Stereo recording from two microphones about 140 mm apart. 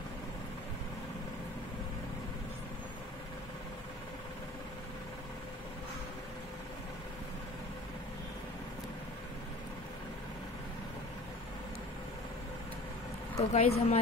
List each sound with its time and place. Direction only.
13.4 s speech: 50° left (ahead or behind)